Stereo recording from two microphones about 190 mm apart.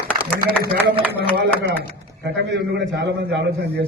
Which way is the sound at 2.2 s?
65° right (ahead or behind).